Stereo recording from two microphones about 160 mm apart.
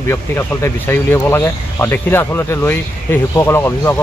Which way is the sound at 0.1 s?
15° left (ahead or behind).